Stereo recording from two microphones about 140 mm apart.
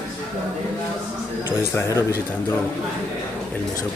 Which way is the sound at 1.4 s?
20° left (ahead or behind).